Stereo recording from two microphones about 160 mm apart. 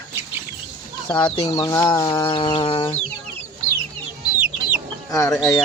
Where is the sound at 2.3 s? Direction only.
30° left (ahead or behind).